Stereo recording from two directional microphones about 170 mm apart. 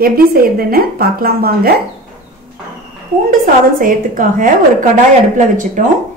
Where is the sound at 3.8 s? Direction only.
55° right (ahead or behind).